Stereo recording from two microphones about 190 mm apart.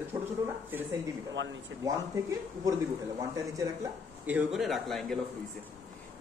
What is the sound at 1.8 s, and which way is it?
A man's voice, 20° right (ahead or behind).